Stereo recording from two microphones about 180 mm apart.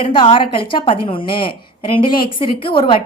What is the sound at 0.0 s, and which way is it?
A woman's voice, 30° left (ahead or behind).